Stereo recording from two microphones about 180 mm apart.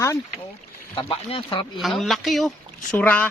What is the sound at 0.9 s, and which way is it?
Speech, 30° left (ahead or behind).